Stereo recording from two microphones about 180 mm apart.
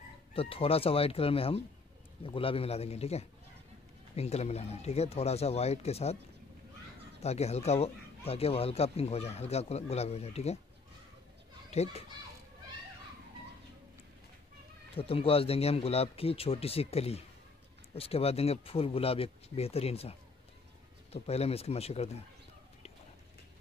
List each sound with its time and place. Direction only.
0.3 s speech: 30° left (ahead or behind)
7.2 s speech: 35° left (ahead or behind)
11.7 s speech: 35° left (ahead or behind)
15.0 s speech: 30° left (ahead or behind)